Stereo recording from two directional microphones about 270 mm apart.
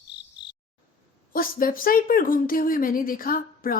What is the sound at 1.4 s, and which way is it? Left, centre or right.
Speech, left.